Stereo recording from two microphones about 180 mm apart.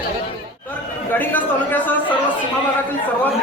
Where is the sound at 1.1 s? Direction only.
10° left (ahead or behind).